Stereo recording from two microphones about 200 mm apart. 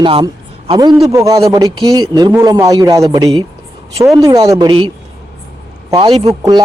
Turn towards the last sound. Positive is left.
turn(degrees=-20)  # may be behind; listen again after turning